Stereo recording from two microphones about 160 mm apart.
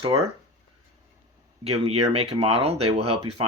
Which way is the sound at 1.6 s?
40° right (ahead or behind).